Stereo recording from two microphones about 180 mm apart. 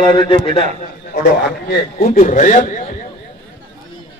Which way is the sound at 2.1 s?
45° left (ahead or behind).